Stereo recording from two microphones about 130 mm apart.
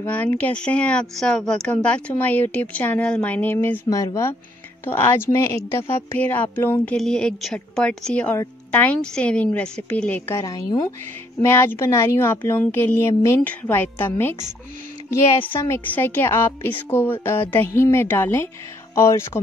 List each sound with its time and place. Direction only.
0.0 s speech: 10° left (ahead or behind)
10.4 s speech: 30° left (ahead or behind)
11.4 s speech: 20° left (ahead or behind)
15.4 s speech: 20° left (ahead or behind)